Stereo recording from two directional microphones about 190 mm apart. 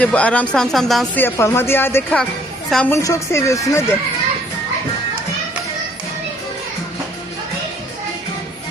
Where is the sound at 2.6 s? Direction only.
Centre (ahead or behind).